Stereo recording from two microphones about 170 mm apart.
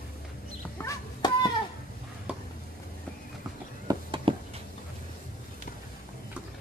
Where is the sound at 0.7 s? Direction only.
20° left (ahead or behind).